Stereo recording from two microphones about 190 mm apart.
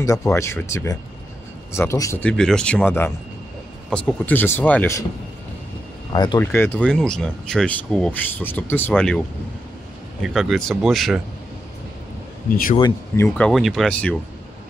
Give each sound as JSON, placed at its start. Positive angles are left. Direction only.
{"t": 0.0, "sound": "speech", "side_deg": 15}
{"t": 6.1, "sound": "speech", "side_deg": 20}
{"t": 6.4, "sound": "speech", "side_deg": 10}
{"t": 10.2, "sound": "speech", "side_deg": 0}
{"t": 13.1, "sound": "speech", "side_deg": 10}
{"t": 13.5, "sound": "speech", "side_deg": 0}